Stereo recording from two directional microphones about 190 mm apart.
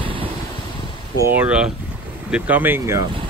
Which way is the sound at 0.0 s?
30° right (ahead or behind).